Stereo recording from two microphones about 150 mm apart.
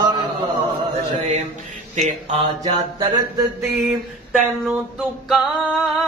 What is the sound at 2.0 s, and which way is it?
Speech, 45° right (ahead or behind).